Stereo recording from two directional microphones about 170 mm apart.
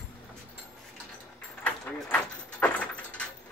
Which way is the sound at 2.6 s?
10° left (ahead or behind).